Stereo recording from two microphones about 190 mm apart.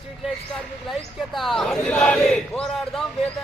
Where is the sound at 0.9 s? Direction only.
Centre (ahead or behind).